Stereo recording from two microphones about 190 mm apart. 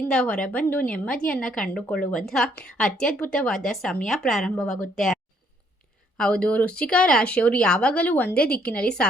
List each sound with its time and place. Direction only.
0.1 s speech: 5° left (ahead or behind)
6.1 s speech: 5° left (ahead or behind)
8.4 s a woman's voice: 55° left (ahead or behind)
8.6 s a woman's voice: 5° left (ahead or behind)